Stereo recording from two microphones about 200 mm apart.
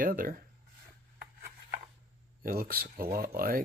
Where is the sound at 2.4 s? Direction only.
45° right (ahead or behind).